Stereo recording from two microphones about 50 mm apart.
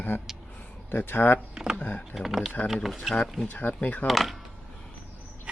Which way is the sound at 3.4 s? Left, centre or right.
Left.